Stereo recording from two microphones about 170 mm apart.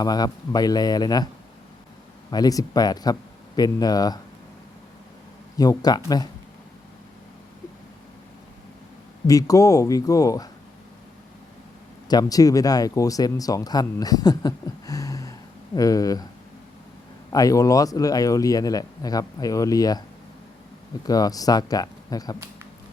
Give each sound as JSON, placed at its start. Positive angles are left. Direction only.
{"t": 0.0, "sound": "speech", "side_deg": 20}
{"t": 2.3, "sound": "speech", "side_deg": 20}
{"t": 5.5, "sound": "speech", "side_deg": 20}
{"t": 9.2, "sound": "speech", "side_deg": 20}
{"t": 12.0, "sound": "speech", "side_deg": 20}
{"t": 17.3, "sound": "speech", "side_deg": 20}
{"t": 21.0, "sound": "speech", "side_deg": 20}